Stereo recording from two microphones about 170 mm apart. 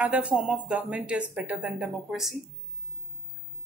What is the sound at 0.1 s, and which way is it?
A woman's voice, 5° right (ahead or behind).